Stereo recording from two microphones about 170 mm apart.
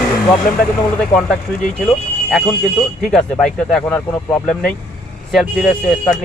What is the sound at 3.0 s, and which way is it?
Speech, 5° left (ahead or behind).